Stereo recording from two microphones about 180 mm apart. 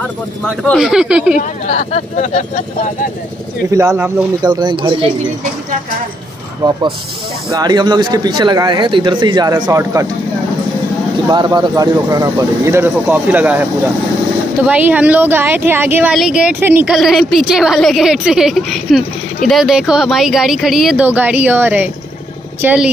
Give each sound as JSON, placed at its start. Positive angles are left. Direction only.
{"t": 0.7, "sound": "a woman's voice", "side_deg": -5}
{"t": 1.3, "sound": "speech", "side_deg": 40}
{"t": 3.7, "sound": "speech", "side_deg": -15}
{"t": 6.6, "sound": "speech", "side_deg": -25}
{"t": 11.2, "sound": "speech", "side_deg": -25}
{"t": 16.9, "sound": "a woman's voice", "side_deg": 0}